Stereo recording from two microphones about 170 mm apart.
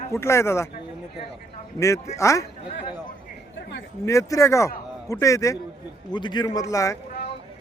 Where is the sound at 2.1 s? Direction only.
20° left (ahead or behind).